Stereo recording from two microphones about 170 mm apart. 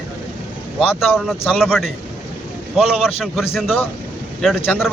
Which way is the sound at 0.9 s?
Centre (ahead or behind).